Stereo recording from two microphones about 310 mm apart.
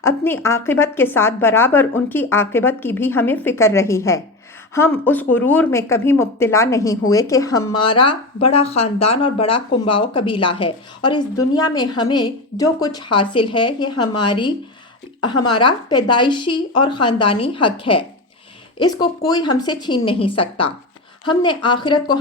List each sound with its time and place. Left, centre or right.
0.0 s a woman's voice: centre